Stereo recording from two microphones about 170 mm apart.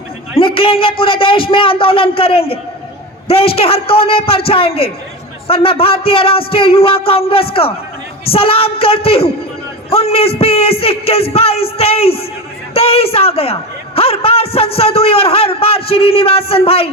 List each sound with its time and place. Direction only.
0.3 s a man's voice: 30° left (ahead or behind)